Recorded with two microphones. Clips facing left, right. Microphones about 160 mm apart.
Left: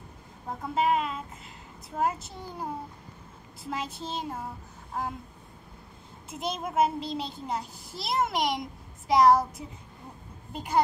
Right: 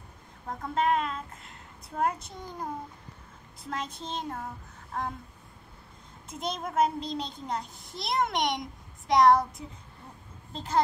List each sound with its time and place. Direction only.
0.5 s a child's voice: 5° left (ahead or behind)
6.3 s a child's voice: 5° left (ahead or behind)